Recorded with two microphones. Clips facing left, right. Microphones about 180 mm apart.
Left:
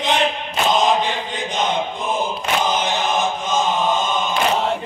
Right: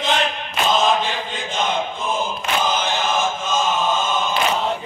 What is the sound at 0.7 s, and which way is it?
Mantra, 15° left (ahead or behind).